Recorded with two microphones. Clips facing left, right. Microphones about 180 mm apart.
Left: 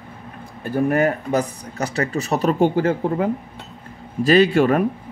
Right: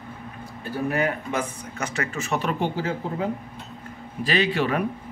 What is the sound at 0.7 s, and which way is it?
A man's voice, 50° left (ahead or behind).